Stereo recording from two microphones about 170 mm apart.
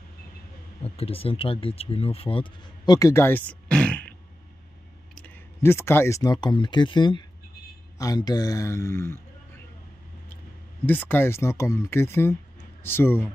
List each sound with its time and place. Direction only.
0.8 s speech: 35° left (ahead or behind); by 4.1 s 5° left (ahead or behind)
5.1 s speech: 10° left (ahead or behind)
10.9 s speech: 10° left (ahead or behind)